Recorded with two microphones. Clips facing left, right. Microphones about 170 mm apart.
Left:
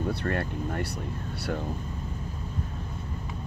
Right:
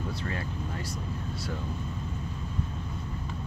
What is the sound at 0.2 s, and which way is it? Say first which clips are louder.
Speech: left 5 dB; 60° left (ahead or behind).